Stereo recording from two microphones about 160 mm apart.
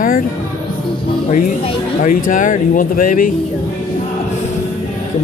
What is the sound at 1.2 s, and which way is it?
Speech, 55° left (ahead or behind).